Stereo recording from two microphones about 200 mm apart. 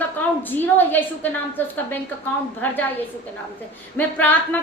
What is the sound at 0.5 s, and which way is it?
A woman's voice, 10° left (ahead or behind).